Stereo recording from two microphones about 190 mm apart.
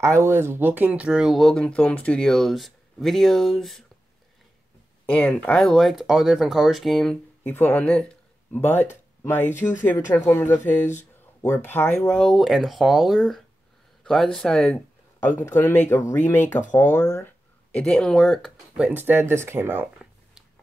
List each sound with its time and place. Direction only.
0.0 s speech: 15° right (ahead or behind)
5.1 s speech: 5° left (ahead or behind)
17.7 s speech: 5° left (ahead or behind); by 19.9 s 10° right (ahead or behind)